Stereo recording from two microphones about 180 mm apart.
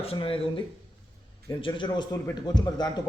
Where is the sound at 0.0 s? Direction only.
30° left (ahead or behind).